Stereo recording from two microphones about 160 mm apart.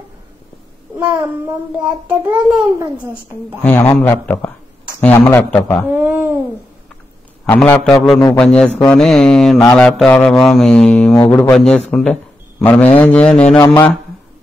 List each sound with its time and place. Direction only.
2.0 s a child's voice: 15° right (ahead or behind)
3.9 s a man's voice: 10° left (ahead or behind)
5.9 s babbling: 15° right (ahead or behind)
7.4 s a sound: 10° left (ahead or behind)
11.2 s a man's voice: 15° left (ahead or behind)
11.5 s a sound: centre (ahead or behind)
11.9 s a man's voice: centre (ahead or behind)